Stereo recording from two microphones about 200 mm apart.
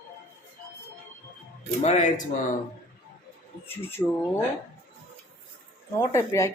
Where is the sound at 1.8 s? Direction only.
35° left (ahead or behind).